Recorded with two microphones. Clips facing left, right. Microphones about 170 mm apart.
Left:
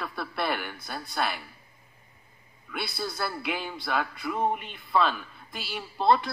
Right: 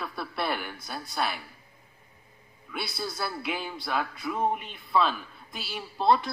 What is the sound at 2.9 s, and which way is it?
Speech, centre (ahead or behind).